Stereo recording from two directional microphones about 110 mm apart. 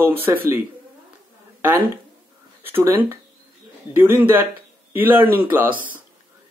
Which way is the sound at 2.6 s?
20° right (ahead or behind).